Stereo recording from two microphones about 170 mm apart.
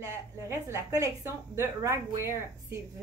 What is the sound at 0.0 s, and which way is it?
A woman's voice, 15° right (ahead or behind).